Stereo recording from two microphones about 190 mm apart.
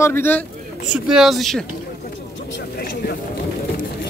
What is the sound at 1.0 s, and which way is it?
Speech, centre (ahead or behind).